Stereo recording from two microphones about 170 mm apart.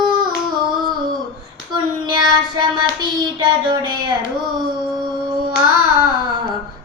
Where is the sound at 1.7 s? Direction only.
25° right (ahead or behind).